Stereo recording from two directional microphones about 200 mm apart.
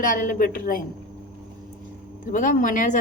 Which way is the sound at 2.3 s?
40° left (ahead or behind).